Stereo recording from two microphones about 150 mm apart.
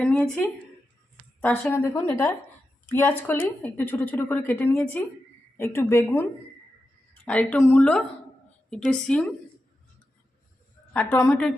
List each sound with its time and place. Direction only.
0.0 s a woman's voice: 5° left (ahead or behind)
1.4 s a woman's voice: 10° left (ahead or behind)
7.3 s a woman's voice: 10° left (ahead or behind)
10.9 s a woman's voice: 10° left (ahead or behind)